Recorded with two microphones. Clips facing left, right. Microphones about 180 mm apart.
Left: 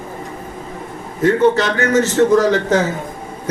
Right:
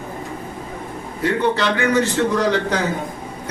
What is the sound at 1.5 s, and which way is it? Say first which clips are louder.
A man's voice: left 2 dB; 40° left (ahead or behind).